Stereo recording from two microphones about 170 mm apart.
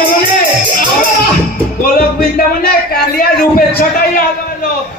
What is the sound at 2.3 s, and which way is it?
A man's voice, 60° left (ahead or behind).